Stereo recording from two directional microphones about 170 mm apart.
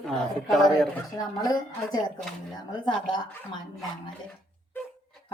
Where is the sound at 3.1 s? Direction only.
25° left (ahead or behind).